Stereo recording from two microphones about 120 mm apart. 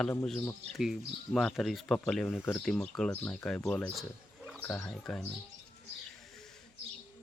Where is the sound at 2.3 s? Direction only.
20° left (ahead or behind).